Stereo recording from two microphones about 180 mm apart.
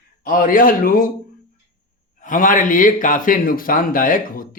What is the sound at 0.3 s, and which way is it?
Speech, 50° left (ahead or behind).